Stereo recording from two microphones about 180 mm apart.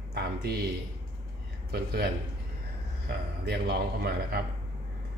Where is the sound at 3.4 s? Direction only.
60° right (ahead or behind).